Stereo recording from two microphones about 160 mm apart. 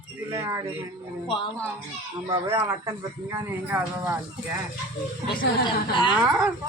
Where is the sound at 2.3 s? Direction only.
20° right (ahead or behind).